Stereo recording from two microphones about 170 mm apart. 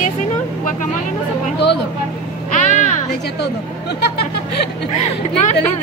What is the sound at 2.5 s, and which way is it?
Speech, 45° left (ahead or behind).